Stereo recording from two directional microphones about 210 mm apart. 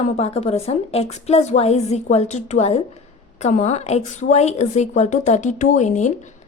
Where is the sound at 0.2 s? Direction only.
30° left (ahead or behind).